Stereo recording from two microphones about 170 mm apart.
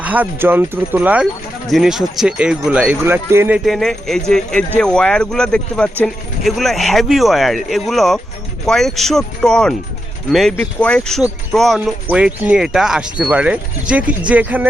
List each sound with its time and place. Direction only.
0.0 s speech: 10° right (ahead or behind)
3.7 s speech: centre (ahead or behind)